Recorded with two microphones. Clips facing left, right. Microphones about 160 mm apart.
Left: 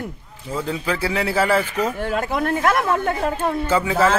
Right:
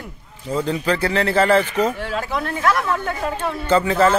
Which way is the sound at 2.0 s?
50° left (ahead or behind).